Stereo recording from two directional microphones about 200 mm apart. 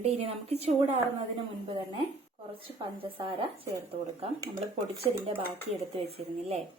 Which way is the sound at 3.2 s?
30° right (ahead or behind).